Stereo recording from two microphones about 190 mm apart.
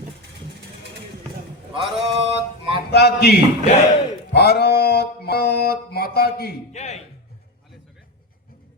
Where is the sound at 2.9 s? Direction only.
60° left (ahead or behind).